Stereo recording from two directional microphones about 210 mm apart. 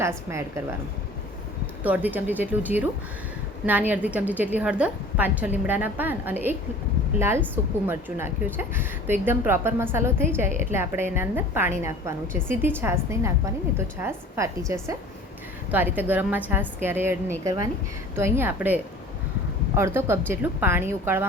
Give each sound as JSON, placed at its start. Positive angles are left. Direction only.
{"t": 0.0, "sound": "a woman's voice", "side_deg": -15}
{"t": 1.8, "sound": "a woman's voice", "side_deg": -10}